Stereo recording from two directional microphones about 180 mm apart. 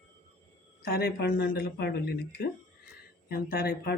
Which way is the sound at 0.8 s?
60° left (ahead or behind).